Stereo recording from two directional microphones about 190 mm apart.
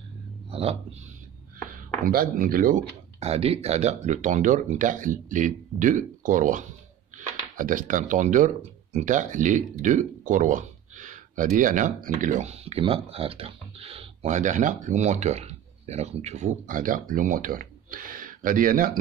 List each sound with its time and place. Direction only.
0.5 s whispering: 30° right (ahead or behind)
2.0 s speech: 50° right (ahead or behind)